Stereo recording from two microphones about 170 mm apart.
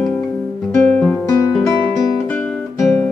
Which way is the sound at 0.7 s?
10° left (ahead or behind).